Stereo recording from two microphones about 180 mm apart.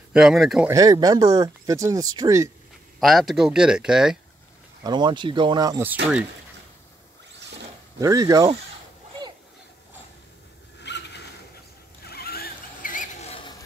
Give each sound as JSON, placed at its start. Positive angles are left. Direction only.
{"t": 0.1, "sound": "speech", "side_deg": 0}
{"t": 0.7, "sound": "speech", "side_deg": -20}
{"t": 3.0, "sound": "speech", "side_deg": 0}
{"t": 4.8, "sound": "speech", "side_deg": -25}
{"t": 8.0, "sound": "speech", "side_deg": -20}
{"t": 10.8, "sound": "vehicle", "side_deg": 70}
{"t": 12.0, "sound": "a sound", "side_deg": 60}